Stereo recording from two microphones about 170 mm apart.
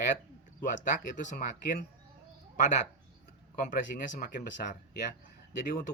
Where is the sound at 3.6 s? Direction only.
50° left (ahead or behind).